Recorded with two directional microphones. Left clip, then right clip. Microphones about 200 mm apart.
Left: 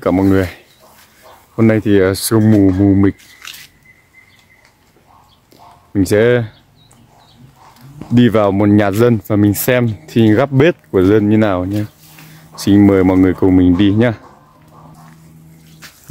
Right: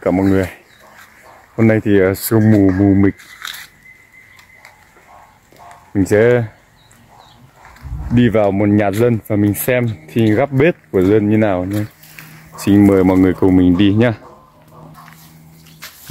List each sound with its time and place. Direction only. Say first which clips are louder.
0.0 s speech: left 2 dB; 10° left (ahead or behind)
1.6 s speech: left 1 dB; 5° left (ahead or behind)
5.9 s speech: even; centre (ahead or behind)
8.1 s speech: left 2 dB; 15° left (ahead or behind); by 14.2 s centre (ahead or behind)
15.8 s music: right 3 dB; 20° right (ahead or behind)